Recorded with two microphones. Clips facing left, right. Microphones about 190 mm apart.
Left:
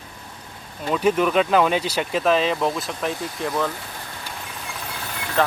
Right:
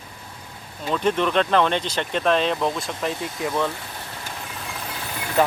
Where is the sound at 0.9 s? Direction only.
5° left (ahead or behind).